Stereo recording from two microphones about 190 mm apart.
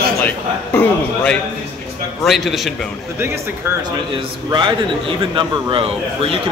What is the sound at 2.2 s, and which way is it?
Speech, centre (ahead or behind).